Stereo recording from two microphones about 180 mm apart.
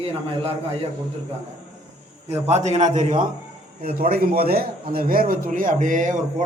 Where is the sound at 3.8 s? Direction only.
55° right (ahead or behind).